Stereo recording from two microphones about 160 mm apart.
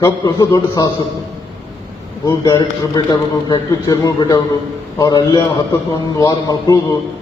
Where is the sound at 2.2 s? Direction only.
25° left (ahead or behind).